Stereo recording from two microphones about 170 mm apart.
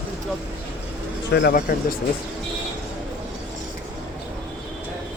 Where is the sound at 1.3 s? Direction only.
75° left (ahead or behind).